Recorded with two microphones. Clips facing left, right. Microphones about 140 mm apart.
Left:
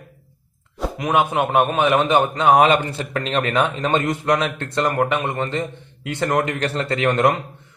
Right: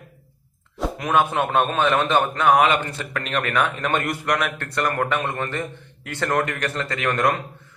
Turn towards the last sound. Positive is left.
turn(degrees=25)  # may be behind; listen again after turning